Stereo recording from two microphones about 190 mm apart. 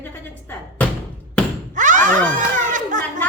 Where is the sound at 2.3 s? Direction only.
40° right (ahead or behind).